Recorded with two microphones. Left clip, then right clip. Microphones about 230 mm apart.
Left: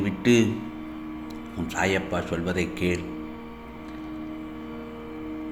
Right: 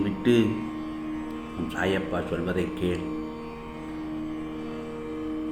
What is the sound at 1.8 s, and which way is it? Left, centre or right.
A man's voice, left.